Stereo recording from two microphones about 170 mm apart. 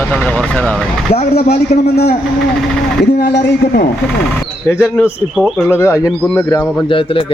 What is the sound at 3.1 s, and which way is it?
Speech, 80° left.